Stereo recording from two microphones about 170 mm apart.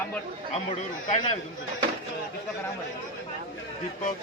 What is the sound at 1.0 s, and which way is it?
Speech, 45° left (ahead or behind).